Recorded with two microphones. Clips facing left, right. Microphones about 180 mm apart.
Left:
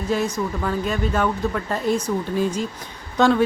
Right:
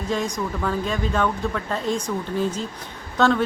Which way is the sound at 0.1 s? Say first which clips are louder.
Left 3 dB; 5° left (ahead or behind).